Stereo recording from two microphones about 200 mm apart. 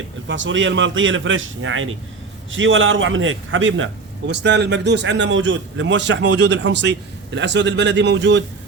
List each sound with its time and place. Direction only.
0.3 s a man's voice: 70° right (ahead or behind)
4.3 s speech: 60° right (ahead or behind)